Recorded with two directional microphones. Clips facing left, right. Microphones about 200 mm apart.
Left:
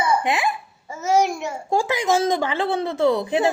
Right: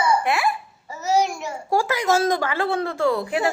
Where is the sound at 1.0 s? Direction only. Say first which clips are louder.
Left 2 dB; 55° left (ahead or behind).